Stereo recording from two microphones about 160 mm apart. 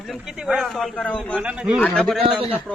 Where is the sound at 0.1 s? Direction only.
5° right (ahead or behind).